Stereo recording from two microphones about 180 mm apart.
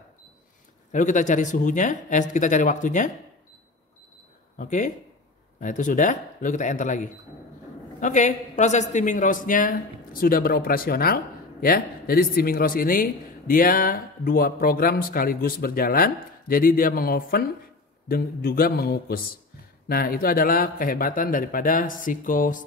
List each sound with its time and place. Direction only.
0.9 s a man's voice: 45° left (ahead or behind)
4.6 s a man's voice: 45° left (ahead or behind)